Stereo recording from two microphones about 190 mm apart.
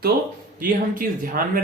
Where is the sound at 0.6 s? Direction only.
45° right (ahead or behind).